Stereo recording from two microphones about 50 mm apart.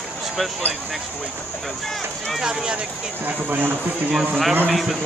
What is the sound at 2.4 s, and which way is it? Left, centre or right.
Speech, centre.